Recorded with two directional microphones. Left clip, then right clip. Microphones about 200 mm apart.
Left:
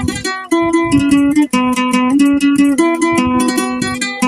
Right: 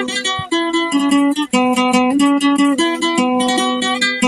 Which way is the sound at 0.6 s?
35° left (ahead or behind).